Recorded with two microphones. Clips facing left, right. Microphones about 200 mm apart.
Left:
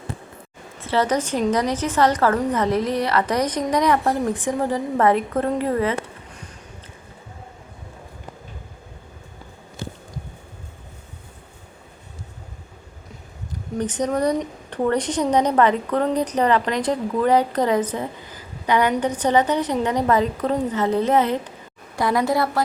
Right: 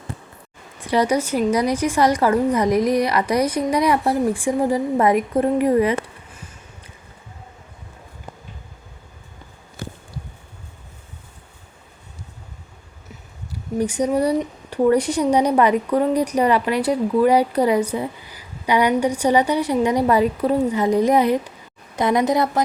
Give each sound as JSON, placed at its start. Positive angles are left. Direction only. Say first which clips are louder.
{"t": 0.8, "sound": "a woman's voice", "louder": "right 2 dB", "side_deg": -15}
{"t": 13.5, "sound": "a woman's voice", "louder": "right 3 dB", "side_deg": -10}